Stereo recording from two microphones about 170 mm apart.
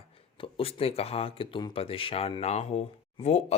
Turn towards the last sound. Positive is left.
turn(degrees=40)  # may be behind; listen again after turning